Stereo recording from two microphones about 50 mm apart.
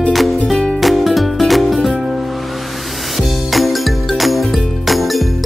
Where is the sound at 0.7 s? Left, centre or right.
Centre.